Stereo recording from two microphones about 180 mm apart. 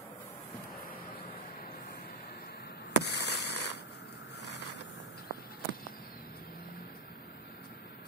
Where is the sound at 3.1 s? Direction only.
70° left (ahead or behind).